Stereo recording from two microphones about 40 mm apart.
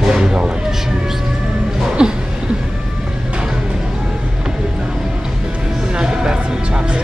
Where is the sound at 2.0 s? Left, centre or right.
Centre.